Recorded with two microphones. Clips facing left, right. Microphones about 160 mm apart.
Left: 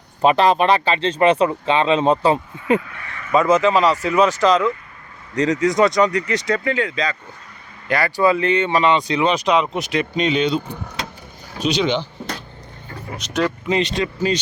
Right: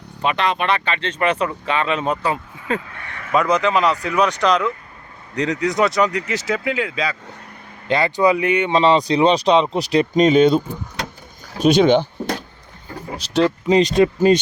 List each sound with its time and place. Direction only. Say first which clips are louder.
0.2 s speech: left 6 dB; 35° left (ahead or behind)
3.3 s speech: left 2 dB; 5° left (ahead or behind)
7.9 s speech: right 1 dB; 20° right (ahead or behind)
8.8 s speech: right 3 dB; 35° right (ahead or behind)
11.6 s speech: right 6 dB; 50° right (ahead or behind)
13.1 s speech: right 4 dB; 30° right (ahead or behind); by 14.3 s 50° right (ahead or behind)